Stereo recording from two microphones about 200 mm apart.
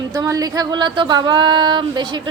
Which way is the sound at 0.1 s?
15° right (ahead or behind).